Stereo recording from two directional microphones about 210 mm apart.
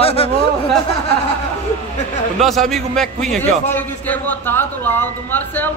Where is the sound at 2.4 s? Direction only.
Centre (ahead or behind).